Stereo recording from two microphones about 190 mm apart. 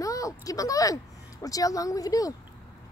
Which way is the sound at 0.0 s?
15° left (ahead or behind).